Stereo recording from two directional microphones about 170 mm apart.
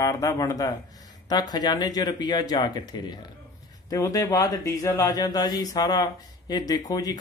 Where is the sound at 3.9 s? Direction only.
20° left (ahead or behind).